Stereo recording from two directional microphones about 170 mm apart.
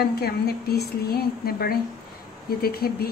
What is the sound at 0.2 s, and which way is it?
Speech, 65° left (ahead or behind).